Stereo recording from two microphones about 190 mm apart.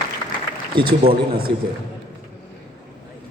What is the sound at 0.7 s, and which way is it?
Speech, 25° right (ahead or behind).